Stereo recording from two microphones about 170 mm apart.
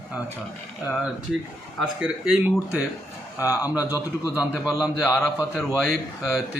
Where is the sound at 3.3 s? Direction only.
20° left (ahead or behind).